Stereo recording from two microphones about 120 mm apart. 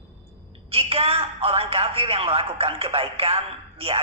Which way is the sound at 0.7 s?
55° right (ahead or behind).